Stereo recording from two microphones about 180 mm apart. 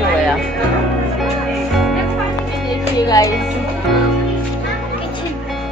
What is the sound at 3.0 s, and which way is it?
Speech, 20° left (ahead or behind).